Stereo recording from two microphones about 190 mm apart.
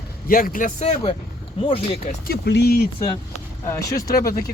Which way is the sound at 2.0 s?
50° left (ahead or behind).